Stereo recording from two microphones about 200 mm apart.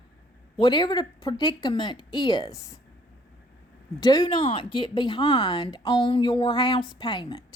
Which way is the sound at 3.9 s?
20° left (ahead or behind).